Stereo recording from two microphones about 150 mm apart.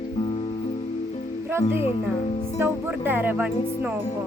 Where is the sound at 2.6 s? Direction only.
15° right (ahead or behind).